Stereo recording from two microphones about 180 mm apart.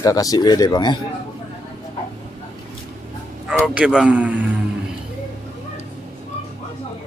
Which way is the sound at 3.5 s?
5° right (ahead or behind).